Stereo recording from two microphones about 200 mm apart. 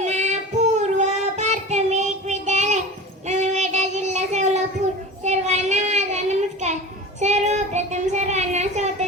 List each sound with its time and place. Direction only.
0.0 s child singing: 35° right (ahead or behind)